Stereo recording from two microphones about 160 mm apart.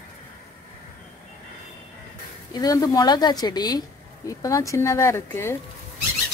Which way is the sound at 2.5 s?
25° left (ahead or behind).